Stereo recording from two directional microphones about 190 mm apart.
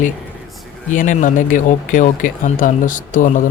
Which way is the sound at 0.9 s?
40° left (ahead or behind).